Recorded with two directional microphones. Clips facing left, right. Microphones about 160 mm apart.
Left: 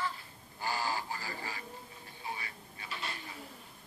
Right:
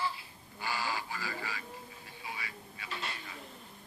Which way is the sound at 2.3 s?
40° left (ahead or behind).